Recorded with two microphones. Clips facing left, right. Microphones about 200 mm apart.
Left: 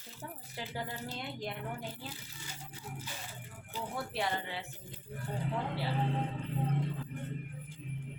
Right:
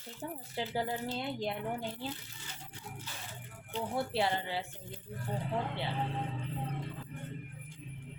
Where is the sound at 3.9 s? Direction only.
30° right (ahead or behind).